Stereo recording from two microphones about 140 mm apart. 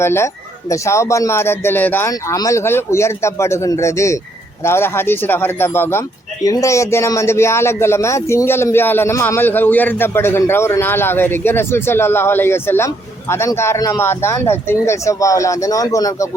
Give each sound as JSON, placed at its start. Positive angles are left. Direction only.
{"t": 0.0, "sound": "speech", "side_deg": 15}
{"t": 2.0, "sound": "a man's voice", "side_deg": 25}